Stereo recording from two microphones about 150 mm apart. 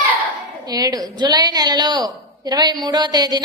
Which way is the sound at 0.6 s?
25° right (ahead or behind).